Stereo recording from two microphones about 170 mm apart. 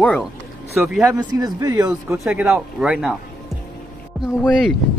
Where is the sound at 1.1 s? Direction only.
20° right (ahead or behind).